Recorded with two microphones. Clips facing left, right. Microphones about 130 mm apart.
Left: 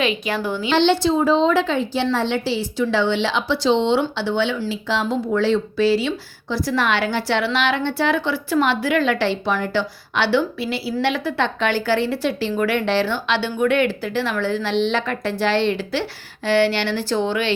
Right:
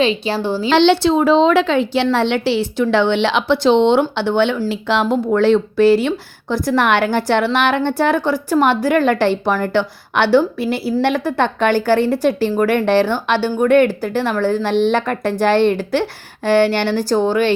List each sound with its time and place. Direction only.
0.0 s a woman's voice: 30° right (ahead or behind)
0.7 s a woman's voice: 85° right; by 17.5 s 45° right (ahead or behind)